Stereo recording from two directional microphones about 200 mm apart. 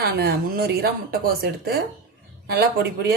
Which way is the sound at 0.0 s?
50° right (ahead or behind).